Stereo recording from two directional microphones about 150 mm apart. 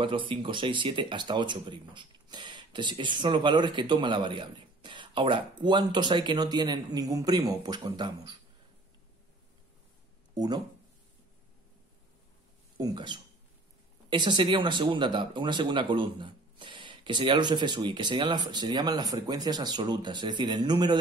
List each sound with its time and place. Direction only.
0.0 s speech: 35° right (ahead or behind)
10.3 s speech: 25° right (ahead or behind)
12.7 s speech: 30° right (ahead or behind)